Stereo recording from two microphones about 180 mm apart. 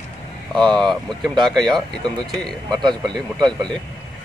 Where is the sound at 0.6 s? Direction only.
5° left (ahead or behind).